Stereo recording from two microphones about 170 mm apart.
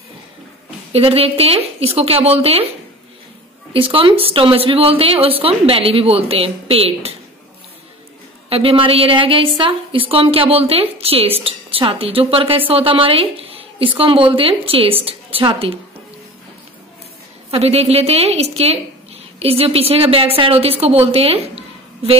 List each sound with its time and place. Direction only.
0.9 s a woman's voice: 35° right (ahead or behind)
3.7 s a woman's voice: 30° right (ahead or behind)
8.5 s a woman's voice: 35° right (ahead or behind)
17.5 s a woman's voice: 35° right (ahead or behind)